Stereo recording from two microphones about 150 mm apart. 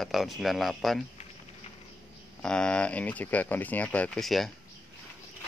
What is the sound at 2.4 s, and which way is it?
Speech, 5° left (ahead or behind).